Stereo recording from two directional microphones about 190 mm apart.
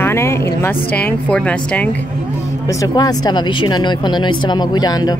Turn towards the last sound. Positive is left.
turn(degrees=20)  # may be behind; listen again after turning